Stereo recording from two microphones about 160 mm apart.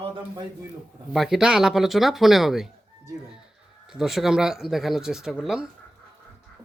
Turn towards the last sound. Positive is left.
turn(degrees=-5)  # may be behind; listen again after turning